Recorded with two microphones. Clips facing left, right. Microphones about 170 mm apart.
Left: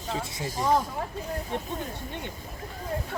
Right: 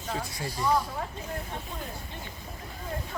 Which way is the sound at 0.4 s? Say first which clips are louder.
Left 2 dB; 45° left (ahead or behind).